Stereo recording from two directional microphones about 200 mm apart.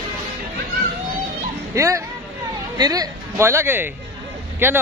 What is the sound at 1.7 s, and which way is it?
Speech, 15° right (ahead or behind).